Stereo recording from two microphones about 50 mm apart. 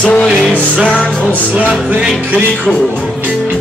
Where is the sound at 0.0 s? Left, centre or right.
Left.